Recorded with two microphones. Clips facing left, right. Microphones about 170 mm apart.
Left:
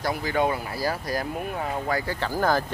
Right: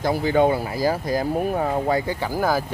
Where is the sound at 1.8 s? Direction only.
25° right (ahead or behind).